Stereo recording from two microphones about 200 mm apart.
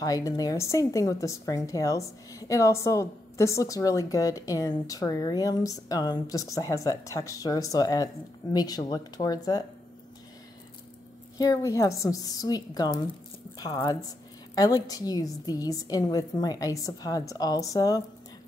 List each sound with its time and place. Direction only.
0.0 s a woman's voice: 20° left (ahead or behind)
11.3 s a woman's voice: 15° left (ahead or behind)